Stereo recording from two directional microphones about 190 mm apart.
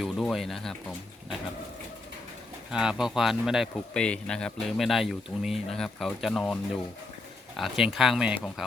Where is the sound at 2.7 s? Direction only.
5° right (ahead or behind).